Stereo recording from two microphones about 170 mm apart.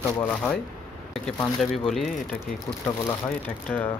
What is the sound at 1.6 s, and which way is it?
Speech, centre (ahead or behind).